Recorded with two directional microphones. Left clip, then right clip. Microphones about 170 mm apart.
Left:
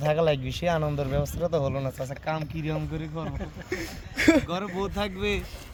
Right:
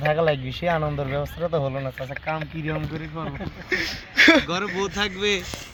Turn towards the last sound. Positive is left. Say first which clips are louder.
# right 8 dB
turn(degrees=10)  # may be behind; listen again after turning